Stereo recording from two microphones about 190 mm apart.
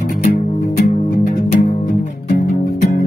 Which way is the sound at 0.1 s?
50° left (ahead or behind).